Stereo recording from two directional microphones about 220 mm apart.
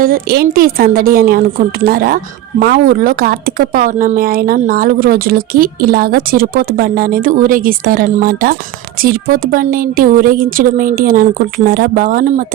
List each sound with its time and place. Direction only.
0.0 s speech: 45° right (ahead or behind)